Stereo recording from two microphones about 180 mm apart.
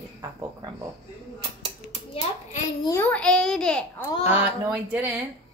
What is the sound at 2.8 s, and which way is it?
A child's voice, 15° left (ahead or behind).